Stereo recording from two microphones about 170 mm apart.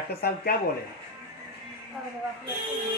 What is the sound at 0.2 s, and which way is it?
Speech, 70° left (ahead or behind).